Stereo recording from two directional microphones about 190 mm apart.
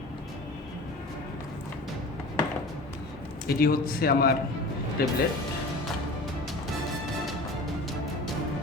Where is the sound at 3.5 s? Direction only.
50° left (ahead or behind).